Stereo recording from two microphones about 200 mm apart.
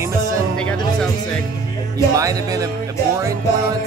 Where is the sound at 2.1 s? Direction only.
15° right (ahead or behind).